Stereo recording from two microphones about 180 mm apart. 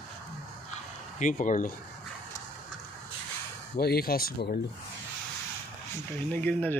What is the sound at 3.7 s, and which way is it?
Speech, 60° left (ahead or behind).